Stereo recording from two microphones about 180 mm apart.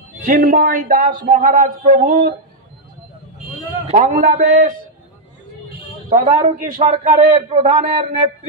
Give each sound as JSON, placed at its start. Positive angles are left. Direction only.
{"t": 0.2, "sound": "speech", "side_deg": -50}
{"t": 3.8, "sound": "speech", "side_deg": -40}
{"t": 6.0, "sound": "a man's voice", "side_deg": -40}